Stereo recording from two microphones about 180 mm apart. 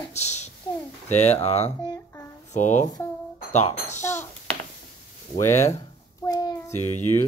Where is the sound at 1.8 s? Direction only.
20° left (ahead or behind).